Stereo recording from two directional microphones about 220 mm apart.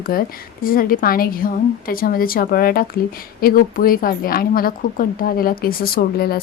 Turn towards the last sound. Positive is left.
turn(degrees=45)  # may be behind; listen again after turning